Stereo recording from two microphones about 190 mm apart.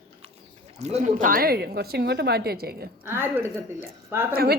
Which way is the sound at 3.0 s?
10° right (ahead or behind).